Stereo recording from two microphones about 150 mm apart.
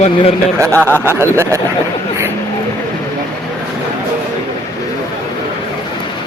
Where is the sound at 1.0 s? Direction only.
15° right (ahead or behind).